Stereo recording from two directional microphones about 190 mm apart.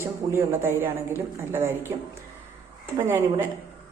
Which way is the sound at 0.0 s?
15° right (ahead or behind).